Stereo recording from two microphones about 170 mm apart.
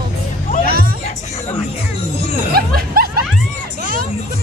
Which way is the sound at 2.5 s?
60° right (ahead or behind).